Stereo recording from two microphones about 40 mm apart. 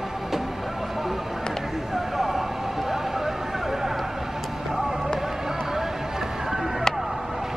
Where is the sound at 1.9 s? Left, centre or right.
Centre.